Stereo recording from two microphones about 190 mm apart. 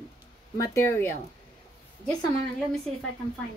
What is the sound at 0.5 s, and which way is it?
Speech, 15° left (ahead or behind).